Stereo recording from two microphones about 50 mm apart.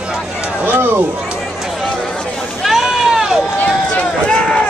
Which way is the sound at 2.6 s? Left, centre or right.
Centre.